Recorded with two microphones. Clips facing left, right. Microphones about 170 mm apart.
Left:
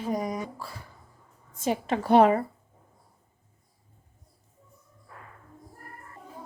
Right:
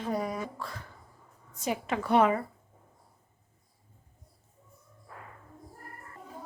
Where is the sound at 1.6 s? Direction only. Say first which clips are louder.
Left 4 dB; 30° left (ahead or behind).